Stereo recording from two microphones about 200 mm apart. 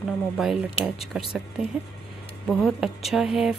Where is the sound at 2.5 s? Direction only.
Centre (ahead or behind).